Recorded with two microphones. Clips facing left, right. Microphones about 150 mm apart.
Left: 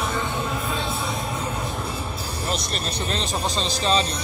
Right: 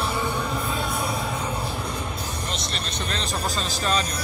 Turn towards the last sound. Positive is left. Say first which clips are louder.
# left 3 dB
turn(degrees=35)  # may be behind; listen again after turning